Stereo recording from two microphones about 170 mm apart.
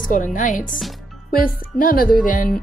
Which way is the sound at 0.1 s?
50° left (ahead or behind).